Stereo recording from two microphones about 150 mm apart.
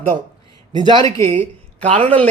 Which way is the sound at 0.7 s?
30° right (ahead or behind).